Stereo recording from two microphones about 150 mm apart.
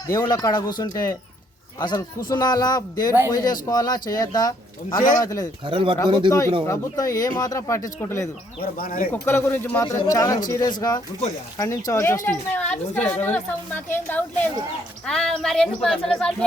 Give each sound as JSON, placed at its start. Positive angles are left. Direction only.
{"t": 0.1, "sound": "a man's voice", "side_deg": 20}
{"t": 5.6, "sound": "speech", "side_deg": -35}
{"t": 6.7, "sound": "a man's voice", "side_deg": 25}
{"t": 8.6, "sound": "speech", "side_deg": 75}
{"t": 9.2, "sound": "a woman's voice", "side_deg": 15}